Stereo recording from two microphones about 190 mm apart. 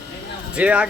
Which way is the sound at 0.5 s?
5° right (ahead or behind).